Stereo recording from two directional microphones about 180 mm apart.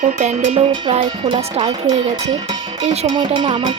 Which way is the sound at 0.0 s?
40° right (ahead or behind).